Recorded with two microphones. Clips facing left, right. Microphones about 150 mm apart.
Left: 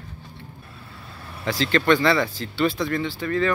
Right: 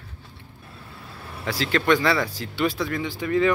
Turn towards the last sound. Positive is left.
turn(degrees=-15)  # may be behind; listen again after turning